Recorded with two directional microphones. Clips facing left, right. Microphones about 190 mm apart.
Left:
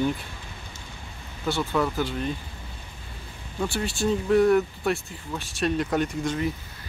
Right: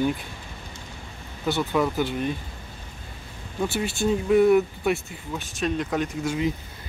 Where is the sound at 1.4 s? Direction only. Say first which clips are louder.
Right 2 dB; 15° right (ahead or behind).